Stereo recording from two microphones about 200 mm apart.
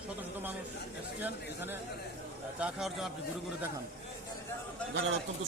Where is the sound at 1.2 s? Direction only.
10° right (ahead or behind).